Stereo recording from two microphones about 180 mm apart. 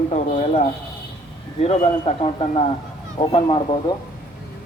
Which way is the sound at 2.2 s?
30° left (ahead or behind).